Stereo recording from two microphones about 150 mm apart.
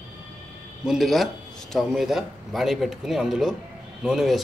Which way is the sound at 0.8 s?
Centre (ahead or behind).